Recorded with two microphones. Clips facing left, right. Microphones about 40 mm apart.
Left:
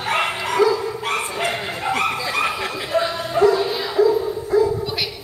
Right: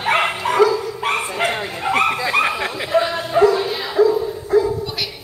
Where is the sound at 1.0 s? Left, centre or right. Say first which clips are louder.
Right 3 dB; right.